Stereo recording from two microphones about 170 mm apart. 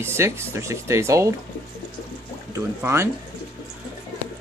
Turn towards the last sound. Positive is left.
turn(degrees=-15)  # may be behind; listen again after turning